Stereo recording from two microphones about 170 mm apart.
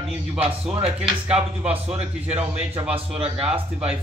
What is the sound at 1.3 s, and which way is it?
Speech, 10° right (ahead or behind).